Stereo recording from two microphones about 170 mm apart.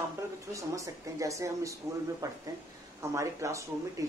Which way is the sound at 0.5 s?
20° right (ahead or behind).